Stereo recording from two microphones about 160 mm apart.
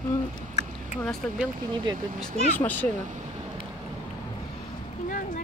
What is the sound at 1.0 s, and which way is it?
Speech, 5° left (ahead or behind).